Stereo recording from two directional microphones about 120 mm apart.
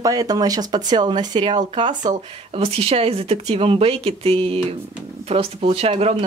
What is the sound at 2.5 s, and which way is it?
Speech, 55° right (ahead or behind).